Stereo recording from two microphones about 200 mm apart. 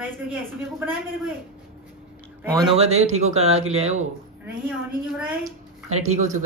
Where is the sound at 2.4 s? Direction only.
15° right (ahead or behind).